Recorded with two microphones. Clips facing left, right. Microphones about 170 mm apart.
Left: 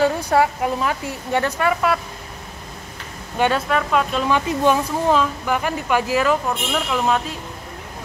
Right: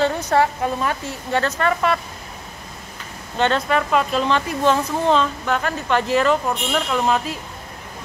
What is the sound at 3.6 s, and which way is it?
Speech, centre (ahead or behind).